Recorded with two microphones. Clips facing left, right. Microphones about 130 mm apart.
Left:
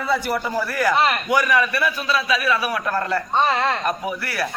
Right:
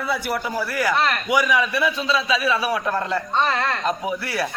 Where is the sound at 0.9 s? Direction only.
15° left (ahead or behind).